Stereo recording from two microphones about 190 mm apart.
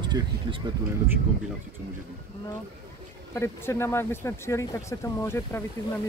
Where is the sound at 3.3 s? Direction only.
15° left (ahead or behind).